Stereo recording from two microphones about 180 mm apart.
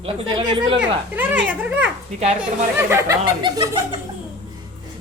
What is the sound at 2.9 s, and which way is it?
Speech, 15° right (ahead or behind).